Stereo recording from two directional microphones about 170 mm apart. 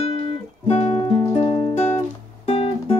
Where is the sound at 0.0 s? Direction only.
35° left (ahead or behind).